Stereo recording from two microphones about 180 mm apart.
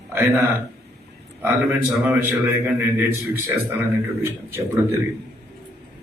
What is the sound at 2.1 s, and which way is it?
A man's voice, 10° right (ahead or behind).